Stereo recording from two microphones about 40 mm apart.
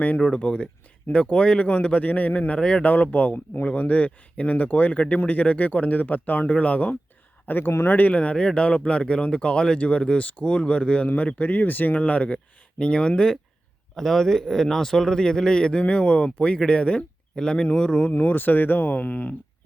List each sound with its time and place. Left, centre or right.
0.3 s speech: left
2.6 s speech: left
2.8 s speech: left
3.8 s speech: left
6.5 s speech: left
7.4 s speech: left
7.9 s speech: left
11.9 s speech: left
12.8 s speech: left
13.9 s a man's voice: centre; by 18.1 s left
18.2 s speech: left